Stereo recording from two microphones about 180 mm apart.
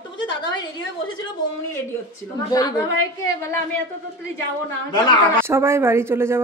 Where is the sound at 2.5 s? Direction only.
20° left (ahead or behind).